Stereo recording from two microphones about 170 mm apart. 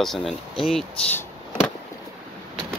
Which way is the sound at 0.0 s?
Centre (ahead or behind).